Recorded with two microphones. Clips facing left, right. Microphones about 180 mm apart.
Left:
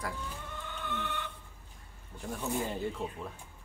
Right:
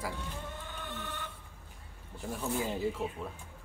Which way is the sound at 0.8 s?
40° right (ahead or behind).